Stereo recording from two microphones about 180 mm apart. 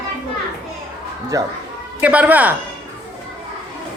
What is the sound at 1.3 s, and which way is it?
Speech, 20° right (ahead or behind).